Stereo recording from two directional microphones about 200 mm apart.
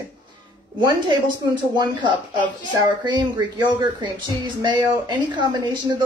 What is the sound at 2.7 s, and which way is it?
Speech, 20° right (ahead or behind).